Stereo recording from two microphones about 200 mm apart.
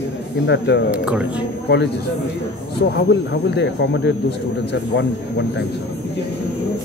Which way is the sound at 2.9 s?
60° left (ahead or behind).